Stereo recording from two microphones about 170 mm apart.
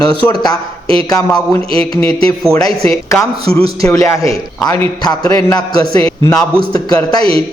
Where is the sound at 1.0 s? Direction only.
20° left (ahead or behind).